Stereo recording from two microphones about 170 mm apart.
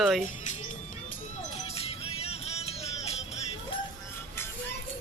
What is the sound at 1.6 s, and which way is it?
Music, 35° left (ahead or behind).